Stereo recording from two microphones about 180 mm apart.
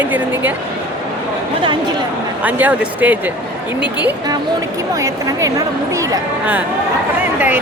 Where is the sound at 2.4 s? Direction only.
10° right (ahead or behind).